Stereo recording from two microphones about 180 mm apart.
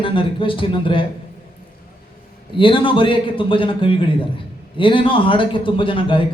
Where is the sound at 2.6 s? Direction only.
30° left (ahead or behind).